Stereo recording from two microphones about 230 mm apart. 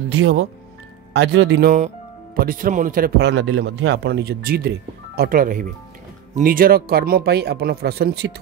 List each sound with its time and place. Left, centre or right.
0.1 s speech: right
1.1 s a man's voice: right